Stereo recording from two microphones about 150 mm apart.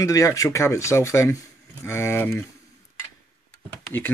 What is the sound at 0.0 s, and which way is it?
Speech, 20° left (ahead or behind).